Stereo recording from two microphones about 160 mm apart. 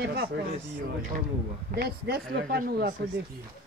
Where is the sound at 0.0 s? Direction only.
80° right.